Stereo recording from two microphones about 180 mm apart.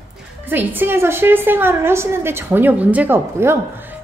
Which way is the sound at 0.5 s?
10° right (ahead or behind).